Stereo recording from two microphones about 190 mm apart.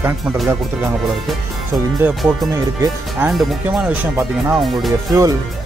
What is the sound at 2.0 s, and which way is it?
Speech, 10° right (ahead or behind).